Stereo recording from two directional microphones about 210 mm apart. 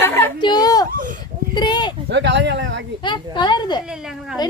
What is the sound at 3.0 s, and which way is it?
Speech, 20° left (ahead or behind).